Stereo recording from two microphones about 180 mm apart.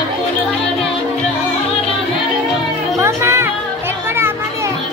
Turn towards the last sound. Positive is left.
turn(degrees=-15)  # may be behind; listen again after turning